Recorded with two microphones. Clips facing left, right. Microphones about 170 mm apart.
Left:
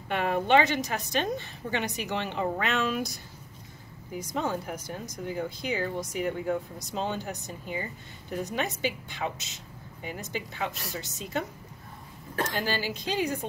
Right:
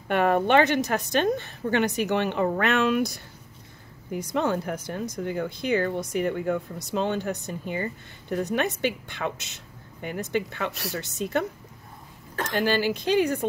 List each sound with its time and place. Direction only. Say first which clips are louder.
0.1 s speech: right 4 dB; 55° right (ahead or behind)
12.5 s speech: right 7 dB; 65° right (ahead or behind)